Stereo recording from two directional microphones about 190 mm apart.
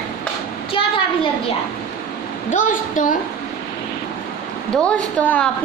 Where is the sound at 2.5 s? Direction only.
45° left (ahead or behind).